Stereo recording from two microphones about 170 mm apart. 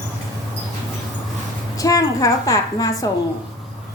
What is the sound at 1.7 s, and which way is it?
A woman's voice, 20° left (ahead or behind).